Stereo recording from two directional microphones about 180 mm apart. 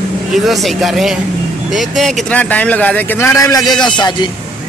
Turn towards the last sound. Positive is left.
turn(degrees=25)  # may be behind; listen again after turning